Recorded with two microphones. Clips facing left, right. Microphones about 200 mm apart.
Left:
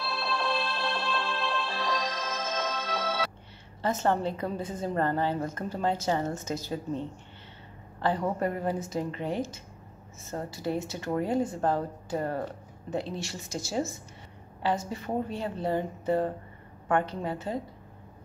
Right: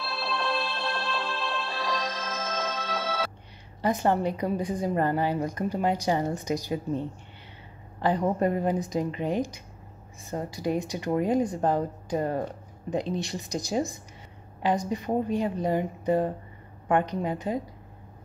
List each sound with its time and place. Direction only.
0.0 s music: centre (ahead or behind)
3.8 s a woman's voice: 15° right (ahead or behind)